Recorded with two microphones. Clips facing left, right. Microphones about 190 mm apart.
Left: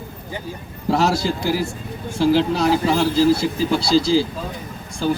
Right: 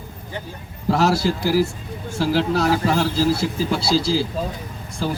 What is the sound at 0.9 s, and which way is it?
A man's voice, 5° right (ahead or behind).